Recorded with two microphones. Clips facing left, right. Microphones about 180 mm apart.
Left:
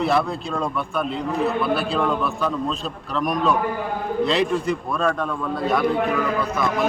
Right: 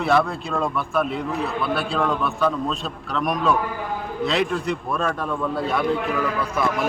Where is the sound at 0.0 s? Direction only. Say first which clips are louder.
Right 1 dB; centre (ahead or behind).